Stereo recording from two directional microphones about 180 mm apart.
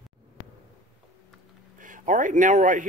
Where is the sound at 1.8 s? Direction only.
45° right (ahead or behind).